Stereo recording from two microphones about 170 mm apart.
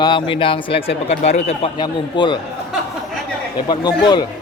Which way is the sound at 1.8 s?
25° left (ahead or behind).